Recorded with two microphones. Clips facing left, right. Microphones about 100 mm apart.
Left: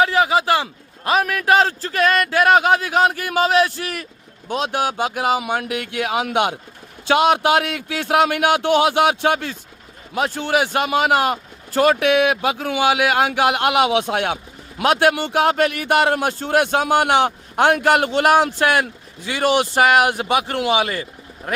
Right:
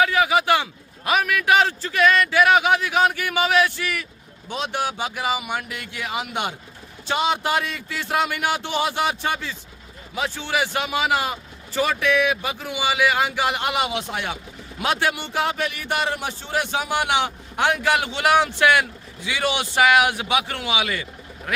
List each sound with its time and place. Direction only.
0.0 s a man's voice: 30° left (ahead or behind); by 9.6 s 60° left (ahead or behind)
10.2 s a man's voice: 45° left (ahead or behind)